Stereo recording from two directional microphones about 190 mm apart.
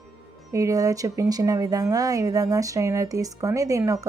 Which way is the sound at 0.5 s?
15° right (ahead or behind).